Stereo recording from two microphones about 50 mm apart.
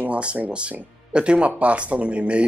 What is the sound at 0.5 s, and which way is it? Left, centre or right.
Speech, right.